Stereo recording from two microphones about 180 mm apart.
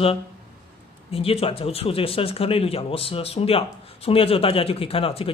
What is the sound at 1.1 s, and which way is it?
Speech, 30° left (ahead or behind).